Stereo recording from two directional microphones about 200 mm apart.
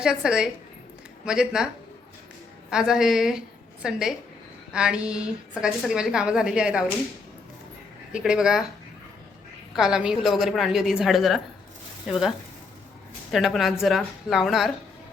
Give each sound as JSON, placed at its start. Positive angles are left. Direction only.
{"t": 0.0, "sound": "a woman's voice", "side_deg": -5}
{"t": 8.1, "sound": "a woman's voice", "side_deg": -5}
{"t": 9.7, "sound": "a woman's voice", "side_deg": -5}
{"t": 13.3, "sound": "a woman's voice", "side_deg": 0}